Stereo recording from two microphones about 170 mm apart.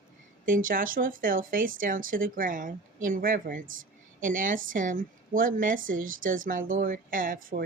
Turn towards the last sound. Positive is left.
turn(degrees=-55)  # may be behind; listen again after turning